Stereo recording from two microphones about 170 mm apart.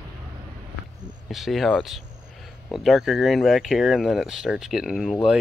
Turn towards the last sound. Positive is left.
turn(degrees=0)  # may be behind; listen again after turning